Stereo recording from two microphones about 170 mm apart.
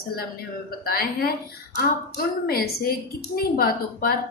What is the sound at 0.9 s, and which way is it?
A woman's voice, 60° left (ahead or behind).